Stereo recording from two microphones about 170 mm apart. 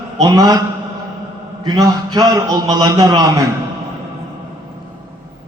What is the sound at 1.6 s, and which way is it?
A man's voice, 20° right (ahead or behind).